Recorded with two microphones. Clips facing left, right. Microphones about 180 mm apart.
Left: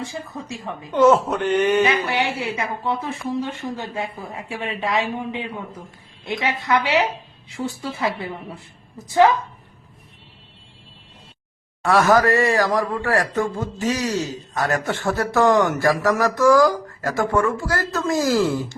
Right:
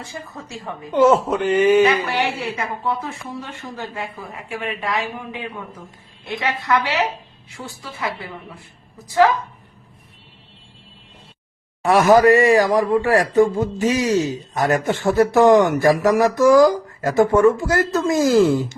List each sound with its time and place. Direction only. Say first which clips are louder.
0.6 s speech: even; centre (ahead or behind)
2.8 s speech: left 1 dB; 25° left (ahead or behind)
9.0 s speech: even; 20° left (ahead or behind)
11.9 s a man's voice: right 4 dB; 15° right (ahead or behind)